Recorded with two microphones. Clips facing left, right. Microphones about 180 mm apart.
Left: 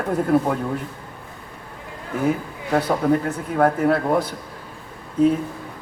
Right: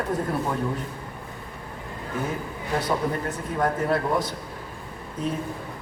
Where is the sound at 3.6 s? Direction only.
60° left (ahead or behind).